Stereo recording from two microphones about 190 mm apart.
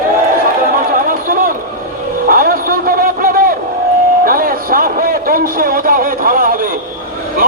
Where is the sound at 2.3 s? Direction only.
50° right (ahead or behind).